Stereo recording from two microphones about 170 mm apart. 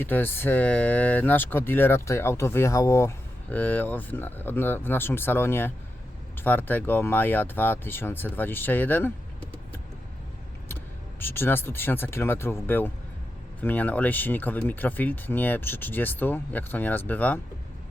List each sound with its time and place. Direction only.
0.0 s speech: 10° left (ahead or behind)
11.2 s speech: 15° left (ahead or behind)